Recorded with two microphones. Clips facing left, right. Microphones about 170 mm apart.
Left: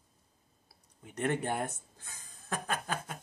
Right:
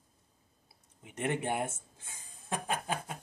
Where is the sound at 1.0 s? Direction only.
15° right (ahead or behind).